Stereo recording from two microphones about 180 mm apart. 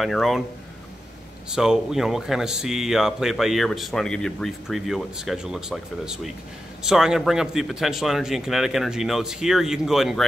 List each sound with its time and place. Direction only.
0.0 s speech: centre (ahead or behind)
1.5 s speech: 5° right (ahead or behind)